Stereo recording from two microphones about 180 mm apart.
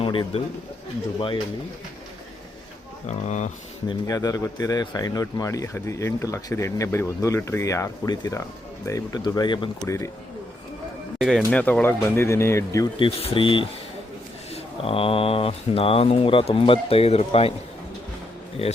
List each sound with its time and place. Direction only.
0.0 s speech: 30° left (ahead or behind)
3.1 s speech: 40° left (ahead or behind)
3.8 s a man's voice: 20° left (ahead or behind)
11.2 s a man's voice: 5° left (ahead or behind); by 13.1 s 20° left (ahead or behind)
13.1 s speech: 35° left (ahead or behind)
18.6 s speech: 35° left (ahead or behind)